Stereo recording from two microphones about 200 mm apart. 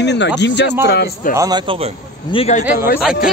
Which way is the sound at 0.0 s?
60° left (ahead or behind).